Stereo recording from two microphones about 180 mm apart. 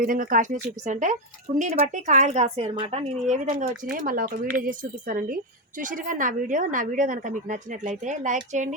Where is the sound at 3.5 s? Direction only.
45° right (ahead or behind).